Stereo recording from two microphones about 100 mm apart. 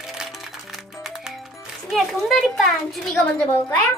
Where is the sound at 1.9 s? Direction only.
Centre (ahead or behind).